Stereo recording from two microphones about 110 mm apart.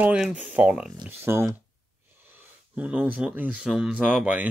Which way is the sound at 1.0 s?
20° right (ahead or behind).